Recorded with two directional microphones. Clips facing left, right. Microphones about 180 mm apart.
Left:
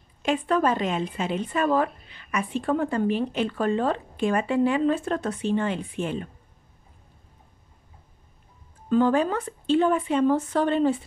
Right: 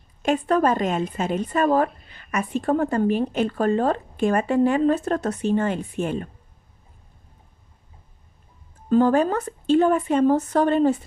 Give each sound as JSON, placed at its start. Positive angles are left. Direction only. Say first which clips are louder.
{"t": 0.2, "sound": "a woman's voice", "louder": "right 3 dB", "side_deg": -45}
{"t": 8.8, "sound": "a woman's voice", "louder": "right 3 dB", "side_deg": -45}